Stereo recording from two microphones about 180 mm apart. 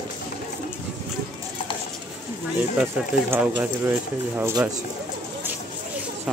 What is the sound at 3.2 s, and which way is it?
Speech, 15° right (ahead or behind).